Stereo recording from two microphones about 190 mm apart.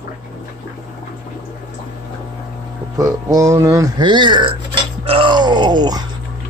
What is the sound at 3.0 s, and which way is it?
Speech, 15° right (ahead or behind).